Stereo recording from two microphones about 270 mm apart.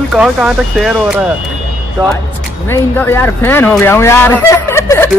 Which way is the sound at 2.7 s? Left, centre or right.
Centre.